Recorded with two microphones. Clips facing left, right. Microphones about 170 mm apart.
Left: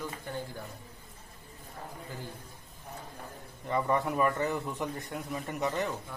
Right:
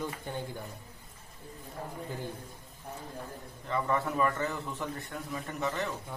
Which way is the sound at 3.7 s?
20° left (ahead or behind).